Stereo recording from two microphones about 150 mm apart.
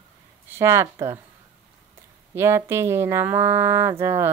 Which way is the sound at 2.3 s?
15° right (ahead or behind).